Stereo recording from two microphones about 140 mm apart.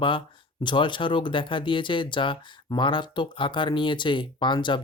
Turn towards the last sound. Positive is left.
turn(degrees=35)  # may be behind; listen again after turning